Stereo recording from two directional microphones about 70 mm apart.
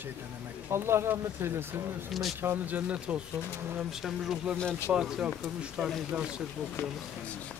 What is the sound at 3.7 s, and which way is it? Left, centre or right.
Speech, centre.